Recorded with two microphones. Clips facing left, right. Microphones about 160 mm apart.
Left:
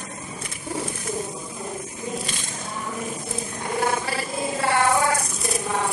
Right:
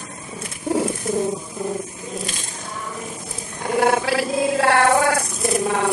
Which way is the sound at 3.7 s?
75° right (ahead or behind).